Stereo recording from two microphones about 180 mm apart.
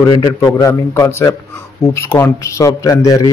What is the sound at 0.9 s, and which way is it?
A man's voice, 15° left (ahead or behind).